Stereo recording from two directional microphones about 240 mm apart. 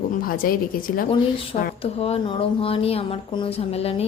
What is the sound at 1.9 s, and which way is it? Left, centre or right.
A woman's voice, left.